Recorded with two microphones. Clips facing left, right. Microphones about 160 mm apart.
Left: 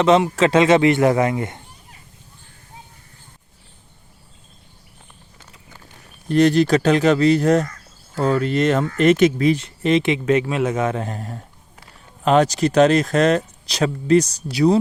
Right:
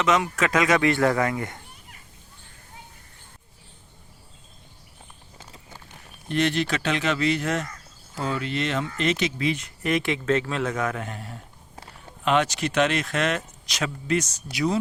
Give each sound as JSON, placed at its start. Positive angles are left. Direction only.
{"t": 0.0, "sound": "a man's voice", "side_deg": 30}
{"t": 6.2, "sound": "speech", "side_deg": 40}
{"t": 9.6, "sound": "a man's voice", "side_deg": 25}